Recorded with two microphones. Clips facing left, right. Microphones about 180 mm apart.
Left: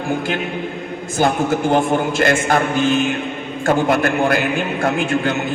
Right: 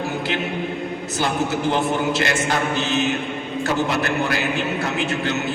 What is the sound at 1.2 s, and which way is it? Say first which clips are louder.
Speech: left 5 dB; 50° left (ahead or behind).